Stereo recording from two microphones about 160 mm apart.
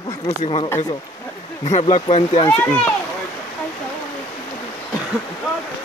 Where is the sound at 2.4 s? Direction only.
10° left (ahead or behind).